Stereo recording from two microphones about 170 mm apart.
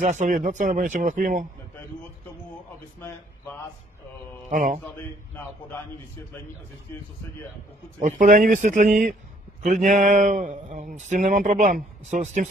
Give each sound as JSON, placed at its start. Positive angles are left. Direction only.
{"t": 0.0, "sound": "speech", "side_deg": -45}
{"t": 4.5, "sound": "speech", "side_deg": -55}
{"t": 8.0, "sound": "speech", "side_deg": -50}